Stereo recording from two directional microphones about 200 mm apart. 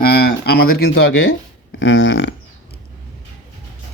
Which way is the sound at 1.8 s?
70° left (ahead or behind).